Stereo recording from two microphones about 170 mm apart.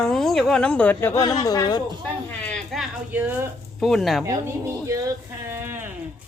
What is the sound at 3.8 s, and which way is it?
Speech, centre (ahead or behind).